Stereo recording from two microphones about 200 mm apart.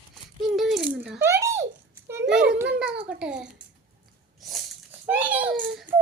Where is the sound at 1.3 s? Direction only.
15° right (ahead or behind).